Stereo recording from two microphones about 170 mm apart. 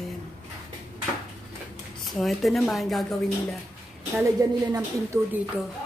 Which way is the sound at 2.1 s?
Centre (ahead or behind).